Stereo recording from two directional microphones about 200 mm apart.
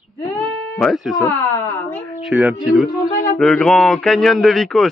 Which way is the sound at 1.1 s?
15° left (ahead or behind).